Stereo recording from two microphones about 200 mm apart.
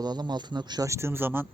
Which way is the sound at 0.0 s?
20° right (ahead or behind).